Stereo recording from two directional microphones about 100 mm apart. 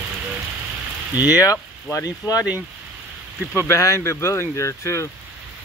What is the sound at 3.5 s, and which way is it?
Speech, 30° left (ahead or behind).